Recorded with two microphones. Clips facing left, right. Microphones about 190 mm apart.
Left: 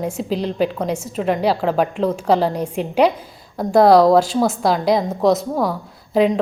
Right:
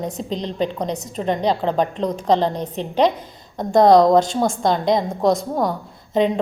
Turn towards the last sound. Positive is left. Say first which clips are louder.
# left 2 dB
turn(degrees=5)  # may be behind; listen again after turning